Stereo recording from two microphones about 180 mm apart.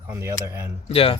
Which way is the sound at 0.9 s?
30° left (ahead or behind).